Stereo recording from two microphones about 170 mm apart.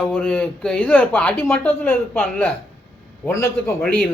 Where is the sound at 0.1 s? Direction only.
5° left (ahead or behind).